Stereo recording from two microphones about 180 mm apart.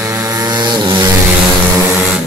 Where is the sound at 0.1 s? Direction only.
20° right (ahead or behind).